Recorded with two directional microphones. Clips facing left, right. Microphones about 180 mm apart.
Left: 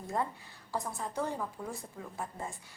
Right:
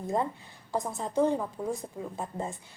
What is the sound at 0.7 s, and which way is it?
A woman's voice, 20° right (ahead or behind).